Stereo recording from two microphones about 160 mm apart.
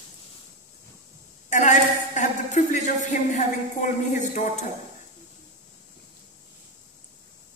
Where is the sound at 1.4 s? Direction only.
50° left (ahead or behind).